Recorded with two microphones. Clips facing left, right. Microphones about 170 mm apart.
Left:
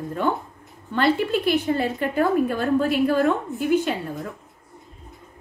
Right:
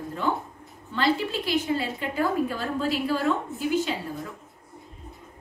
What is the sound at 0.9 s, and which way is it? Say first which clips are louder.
A woman's voice: left 5 dB; 55° left (ahead or behind).